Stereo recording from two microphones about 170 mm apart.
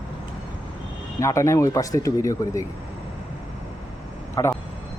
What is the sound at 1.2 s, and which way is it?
Speech, 15° left (ahead or behind).